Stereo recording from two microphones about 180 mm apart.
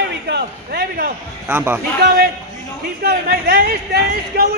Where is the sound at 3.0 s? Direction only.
60° right (ahead or behind).